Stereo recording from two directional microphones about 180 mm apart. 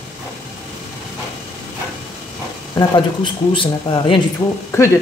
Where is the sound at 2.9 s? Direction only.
25° left (ahead or behind).